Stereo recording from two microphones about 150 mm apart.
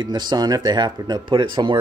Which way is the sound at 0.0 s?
30° right (ahead or behind).